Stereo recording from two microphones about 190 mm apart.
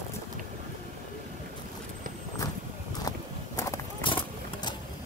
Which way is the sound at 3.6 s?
20° left (ahead or behind).